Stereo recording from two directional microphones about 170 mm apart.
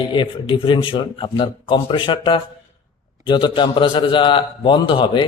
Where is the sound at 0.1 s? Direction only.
30° left (ahead or behind).